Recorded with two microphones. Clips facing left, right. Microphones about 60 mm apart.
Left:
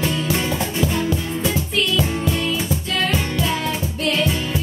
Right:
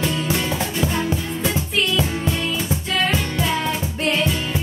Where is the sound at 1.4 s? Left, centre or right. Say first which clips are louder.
Right 1 dB; centre.